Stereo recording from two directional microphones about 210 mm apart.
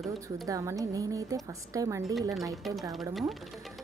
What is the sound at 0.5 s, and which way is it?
A woman's voice, 15° right (ahead or behind).